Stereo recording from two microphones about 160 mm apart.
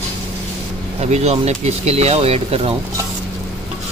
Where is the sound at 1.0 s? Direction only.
45° right (ahead or behind).